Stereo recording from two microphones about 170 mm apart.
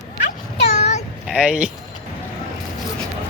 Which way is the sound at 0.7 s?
40° left (ahead or behind).